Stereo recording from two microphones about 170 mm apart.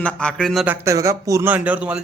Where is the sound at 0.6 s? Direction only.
15° right (ahead or behind).